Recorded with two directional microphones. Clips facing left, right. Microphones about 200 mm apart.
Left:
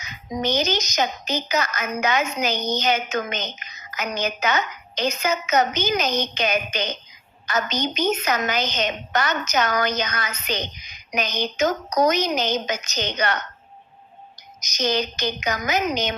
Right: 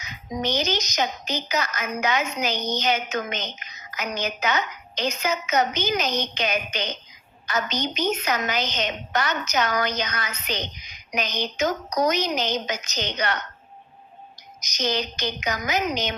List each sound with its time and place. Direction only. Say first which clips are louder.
0.4 s a woman's voice: left 3 dB; 45° left (ahead or behind)
14.6 s a woman's voice: left 3 dB; 50° left (ahead or behind)